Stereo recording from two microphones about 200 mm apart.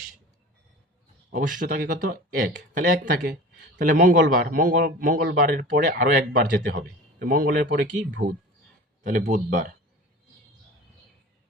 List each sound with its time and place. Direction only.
1.3 s speech: 40° right (ahead or behind)